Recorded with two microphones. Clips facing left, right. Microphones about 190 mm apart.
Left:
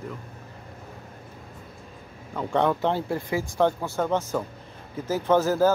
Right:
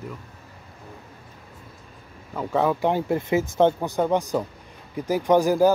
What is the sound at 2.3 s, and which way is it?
Speech, 5° right (ahead or behind).